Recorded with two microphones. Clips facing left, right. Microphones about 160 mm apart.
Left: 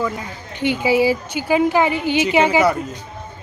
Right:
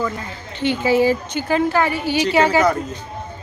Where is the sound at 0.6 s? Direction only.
15° left (ahead or behind).